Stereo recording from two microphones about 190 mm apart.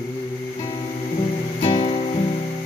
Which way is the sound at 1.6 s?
25° left (ahead or behind).